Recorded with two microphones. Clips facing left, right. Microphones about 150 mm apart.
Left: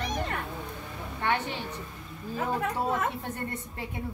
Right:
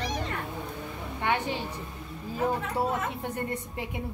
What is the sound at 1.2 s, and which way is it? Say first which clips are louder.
Speech: right 1 dB; 15° right (ahead or behind).